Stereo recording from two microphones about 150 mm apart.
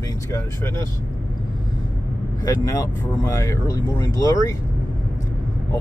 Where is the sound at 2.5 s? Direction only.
20° left (ahead or behind).